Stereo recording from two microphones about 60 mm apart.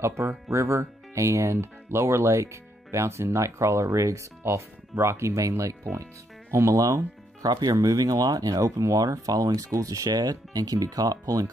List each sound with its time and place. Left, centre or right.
0.0 s speech: right
6.5 s speech: right
7.4 s speech: right